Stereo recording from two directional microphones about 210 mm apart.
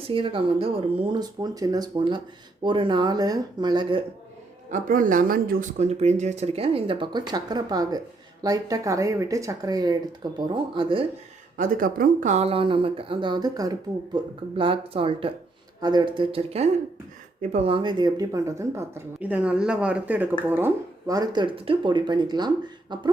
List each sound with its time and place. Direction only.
0.1 s speech: 25° right (ahead or behind)
4.7 s speech: 40° right (ahead or behind); by 11.0 s 25° right (ahead or behind)
11.5 s speech: 40° right (ahead or behind); by 23.0 s 20° right (ahead or behind)